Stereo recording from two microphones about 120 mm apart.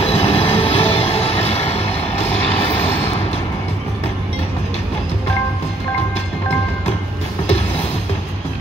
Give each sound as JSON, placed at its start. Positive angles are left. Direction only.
{"t": 0.0, "sound": "train", "side_deg": 60}